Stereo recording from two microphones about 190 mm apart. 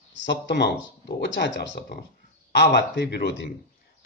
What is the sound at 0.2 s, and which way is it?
Speech, 65° left (ahead or behind).